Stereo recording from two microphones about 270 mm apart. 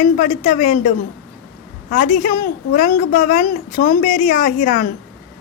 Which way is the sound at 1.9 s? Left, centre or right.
Left.